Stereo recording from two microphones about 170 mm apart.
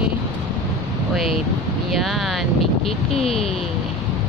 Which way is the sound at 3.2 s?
35° left (ahead or behind).